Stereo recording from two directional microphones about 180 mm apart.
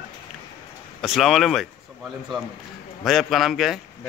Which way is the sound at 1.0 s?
Centre (ahead or behind).